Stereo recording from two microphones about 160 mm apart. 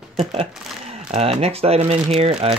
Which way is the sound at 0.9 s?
40° right (ahead or behind).